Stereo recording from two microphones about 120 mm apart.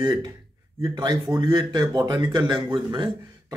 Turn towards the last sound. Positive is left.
turn(degrees=-40)  # may be behind; listen again after turning